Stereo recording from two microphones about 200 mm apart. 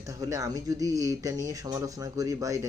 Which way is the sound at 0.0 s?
15° right (ahead or behind).